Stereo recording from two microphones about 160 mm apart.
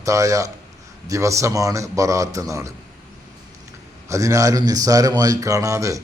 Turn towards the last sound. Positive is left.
turn(degrees=-20)  # may be behind; listen again after turning